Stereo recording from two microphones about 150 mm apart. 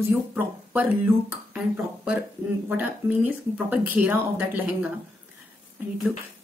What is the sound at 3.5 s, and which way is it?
A woman's voice, 10° right (ahead or behind).